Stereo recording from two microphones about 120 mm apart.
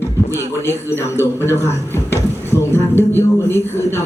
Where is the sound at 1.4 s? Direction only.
20° left (ahead or behind).